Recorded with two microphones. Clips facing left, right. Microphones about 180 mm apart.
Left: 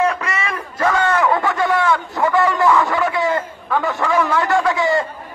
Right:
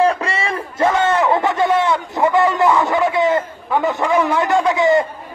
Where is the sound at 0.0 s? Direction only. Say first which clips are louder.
Right 3 dB; 30° right (ahead or behind).